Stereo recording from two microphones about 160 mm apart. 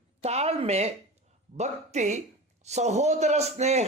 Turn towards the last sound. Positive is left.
turn(degrees=-45)  # may be behind; listen again after turning